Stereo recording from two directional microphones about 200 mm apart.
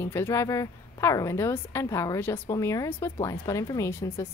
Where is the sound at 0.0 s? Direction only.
15° left (ahead or behind).